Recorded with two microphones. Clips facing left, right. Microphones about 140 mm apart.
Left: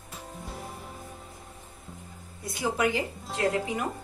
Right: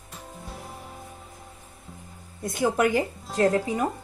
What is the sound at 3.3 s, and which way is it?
Speech, 40° right (ahead or behind).